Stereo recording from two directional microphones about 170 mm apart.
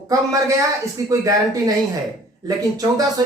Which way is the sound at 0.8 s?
20° right (ahead or behind).